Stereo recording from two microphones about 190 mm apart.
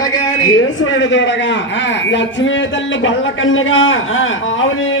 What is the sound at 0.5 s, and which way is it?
Speech, 90° left.